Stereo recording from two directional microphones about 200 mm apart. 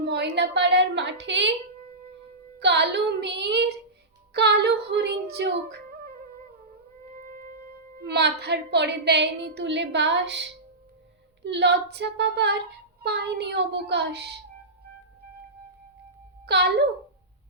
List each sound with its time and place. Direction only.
0.0 s a woman's voice: 55° right (ahead or behind)
2.6 s a woman's voice: 60° right (ahead or behind)
7.2 s music: 45° right (ahead or behind)
7.9 s a woman's voice: 55° right (ahead or behind)
16.5 s a woman's voice: 55° right (ahead or behind)